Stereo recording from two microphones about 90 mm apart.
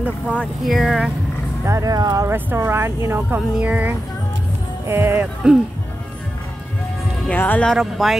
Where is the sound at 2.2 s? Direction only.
25° right (ahead or behind).